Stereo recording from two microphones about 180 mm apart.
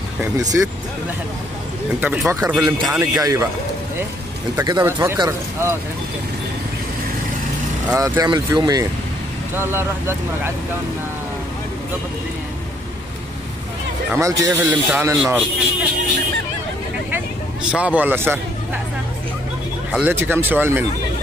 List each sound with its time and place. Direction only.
0.2 s speech: 20° right (ahead or behind)
2.0 s speech: 10° right (ahead or behind)
4.6 s speech: 15° right (ahead or behind)
7.9 s speech: 20° right (ahead or behind)
14.1 s speech: 15° right (ahead or behind)
17.6 s speech: 5° right (ahead or behind)
19.9 s speech: 10° right (ahead or behind)